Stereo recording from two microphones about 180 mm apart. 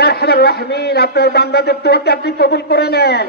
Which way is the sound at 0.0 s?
65° left (ahead or behind).